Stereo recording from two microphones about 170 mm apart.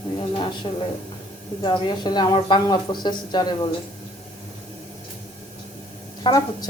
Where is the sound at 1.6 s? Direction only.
30° left (ahead or behind).